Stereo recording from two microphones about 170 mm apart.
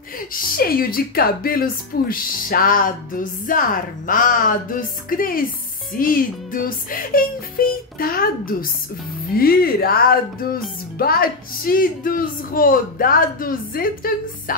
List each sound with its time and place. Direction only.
0.3 s speech: 60° left (ahead or behind)